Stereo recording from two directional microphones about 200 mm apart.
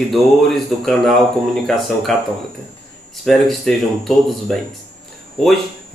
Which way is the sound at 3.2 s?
Centre (ahead or behind).